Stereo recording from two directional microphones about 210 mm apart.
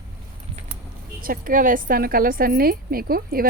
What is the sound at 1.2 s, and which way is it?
A woman's voice, 40° right (ahead or behind).